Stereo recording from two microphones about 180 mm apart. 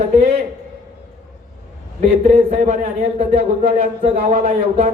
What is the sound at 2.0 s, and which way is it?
Speech, 35° right (ahead or behind).